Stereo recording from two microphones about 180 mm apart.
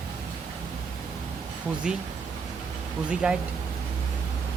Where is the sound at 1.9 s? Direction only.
5° right (ahead or behind).